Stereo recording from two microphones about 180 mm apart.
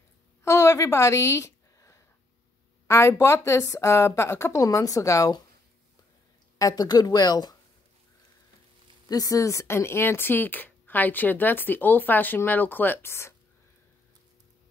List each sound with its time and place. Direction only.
0.4 s a sound: 15° left (ahead or behind)
2.9 s speech: 15° left (ahead or behind)
6.6 s speech: 20° left (ahead or behind)
9.1 s speech: 20° left (ahead or behind)